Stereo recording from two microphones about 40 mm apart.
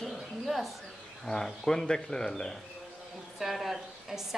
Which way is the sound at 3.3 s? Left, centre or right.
Centre.